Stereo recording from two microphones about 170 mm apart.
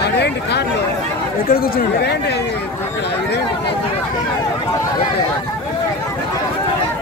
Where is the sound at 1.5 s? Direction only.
60° left (ahead or behind).